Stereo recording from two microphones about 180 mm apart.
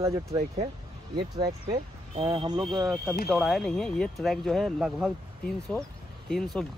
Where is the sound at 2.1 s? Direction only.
30° right (ahead or behind).